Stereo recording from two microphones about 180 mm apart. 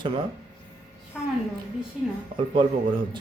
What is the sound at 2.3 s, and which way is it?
Speech, 25° right (ahead or behind).